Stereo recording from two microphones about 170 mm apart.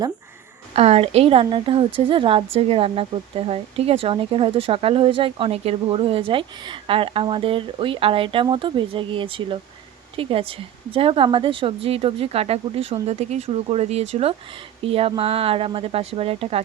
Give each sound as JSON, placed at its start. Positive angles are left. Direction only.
{"t": 0.7, "sound": "speech", "side_deg": -35}